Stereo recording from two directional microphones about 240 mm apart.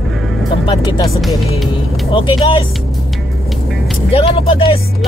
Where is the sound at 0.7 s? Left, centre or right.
Centre.